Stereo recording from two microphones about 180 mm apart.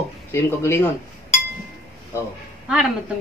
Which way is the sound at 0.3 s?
15° left (ahead or behind).